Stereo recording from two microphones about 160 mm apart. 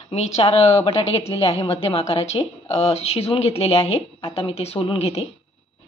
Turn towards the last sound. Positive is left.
turn(degrees=40)  # may be behind; listen again after turning